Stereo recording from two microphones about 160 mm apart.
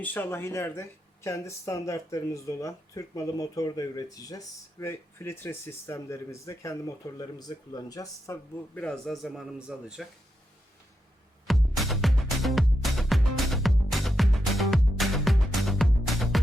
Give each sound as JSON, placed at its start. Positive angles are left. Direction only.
{"t": 0.0, "sound": "speech", "side_deg": 15}
{"t": 8.7, "sound": "a man's voice", "side_deg": 5}
{"t": 11.4, "sound": "music", "side_deg": 0}